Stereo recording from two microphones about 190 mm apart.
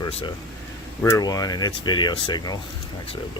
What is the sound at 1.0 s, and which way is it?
Speech, 15° left (ahead or behind).